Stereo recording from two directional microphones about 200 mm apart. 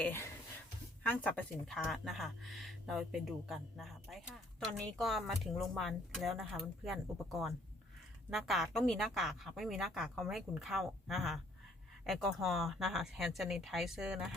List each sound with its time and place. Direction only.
0.0 s a woman's voice: 10° left (ahead or behind)